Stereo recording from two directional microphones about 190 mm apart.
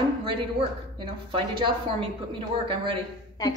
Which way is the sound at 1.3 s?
25° right (ahead or behind).